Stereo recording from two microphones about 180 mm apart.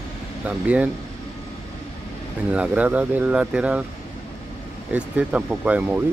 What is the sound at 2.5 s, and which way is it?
Speech, 5° right (ahead or behind).